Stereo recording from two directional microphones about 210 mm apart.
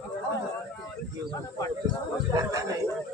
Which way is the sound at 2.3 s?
15° right (ahead or behind).